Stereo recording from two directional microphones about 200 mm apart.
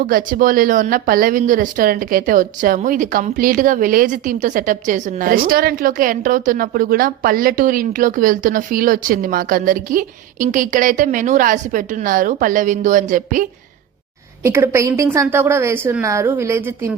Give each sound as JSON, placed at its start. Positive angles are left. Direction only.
{"t": 0.0, "sound": "speech", "side_deg": -45}
{"t": 14.4, "sound": "a woman's voice", "side_deg": -15}